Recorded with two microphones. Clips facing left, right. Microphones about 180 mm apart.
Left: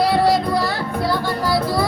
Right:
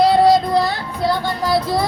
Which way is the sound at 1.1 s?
20° right (ahead or behind).